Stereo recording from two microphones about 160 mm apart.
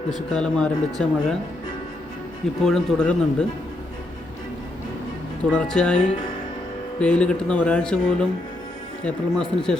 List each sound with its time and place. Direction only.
0.3 s speech: 5° left (ahead or behind)
2.6 s speech: 5° left (ahead or behind)
5.5 s speech: 5° left (ahead or behind)